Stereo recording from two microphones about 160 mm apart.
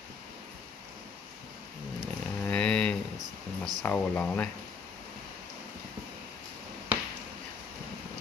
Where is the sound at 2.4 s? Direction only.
5° left (ahead or behind).